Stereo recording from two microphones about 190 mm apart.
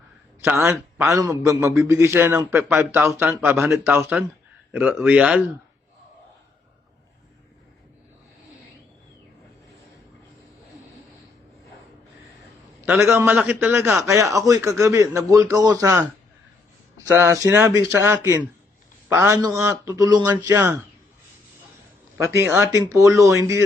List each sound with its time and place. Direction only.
0.6 s a man's voice: 10° right (ahead or behind)
12.8 s a man's voice: 10° right (ahead or behind)
22.2 s a man's voice: 15° right (ahead or behind)